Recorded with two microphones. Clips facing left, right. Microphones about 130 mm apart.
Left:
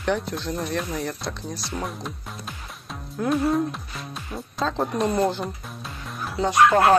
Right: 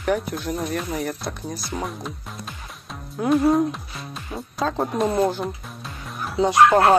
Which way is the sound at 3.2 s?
Centre (ahead or behind).